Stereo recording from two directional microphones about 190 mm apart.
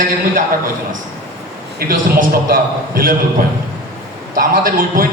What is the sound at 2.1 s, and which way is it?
A man's voice, 50° right (ahead or behind).